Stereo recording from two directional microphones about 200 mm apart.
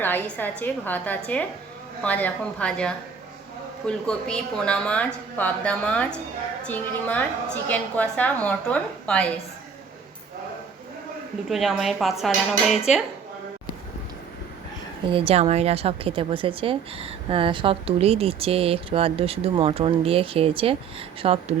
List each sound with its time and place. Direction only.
0.0 s a woman's voice: 10° left (ahead or behind)
11.4 s a woman's voice: centre (ahead or behind)
15.0 s a woman's voice: 25° right (ahead or behind)